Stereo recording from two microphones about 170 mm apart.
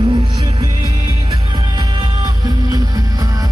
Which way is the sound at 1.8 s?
25° right (ahead or behind).